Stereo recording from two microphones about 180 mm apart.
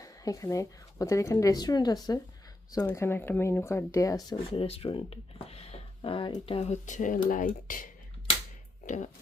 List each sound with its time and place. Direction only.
0.0 s speech: 20° left (ahead or behind)
4.6 s speech: 30° left (ahead or behind); by 7.9 s 50° left (ahead or behind)